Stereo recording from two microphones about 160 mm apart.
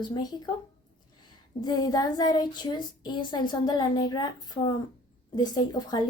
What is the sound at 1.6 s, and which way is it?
Speech, 25° left (ahead or behind).